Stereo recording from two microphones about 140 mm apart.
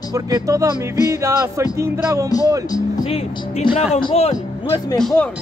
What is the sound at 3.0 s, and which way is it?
Speech, 45° left (ahead or behind).